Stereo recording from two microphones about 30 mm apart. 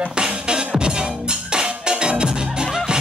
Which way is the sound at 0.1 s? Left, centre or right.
Right.